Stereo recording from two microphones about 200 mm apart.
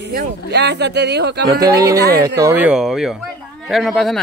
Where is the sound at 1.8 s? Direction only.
15° right (ahead or behind).